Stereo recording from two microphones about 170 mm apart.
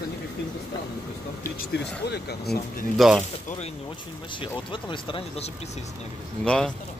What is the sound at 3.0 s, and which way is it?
Speech, centre (ahead or behind).